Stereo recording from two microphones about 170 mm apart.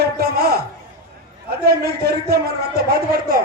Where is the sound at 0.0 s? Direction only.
65° right (ahead or behind).